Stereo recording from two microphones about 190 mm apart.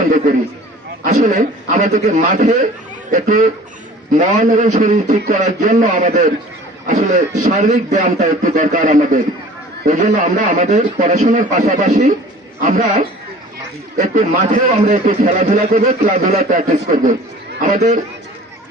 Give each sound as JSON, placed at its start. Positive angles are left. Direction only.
{"t": 0.0, "sound": "a man's voice", "side_deg": -45}